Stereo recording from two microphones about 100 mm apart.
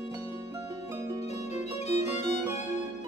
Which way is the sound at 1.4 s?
90° left.